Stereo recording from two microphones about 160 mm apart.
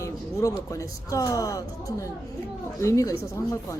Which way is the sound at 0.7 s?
20° left (ahead or behind).